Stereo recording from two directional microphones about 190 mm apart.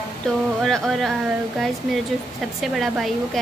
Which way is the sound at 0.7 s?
Centre (ahead or behind).